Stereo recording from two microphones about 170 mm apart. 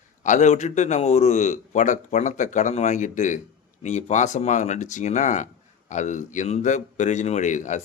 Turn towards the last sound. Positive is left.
turn(degrees=45)  # may be behind; listen again after turning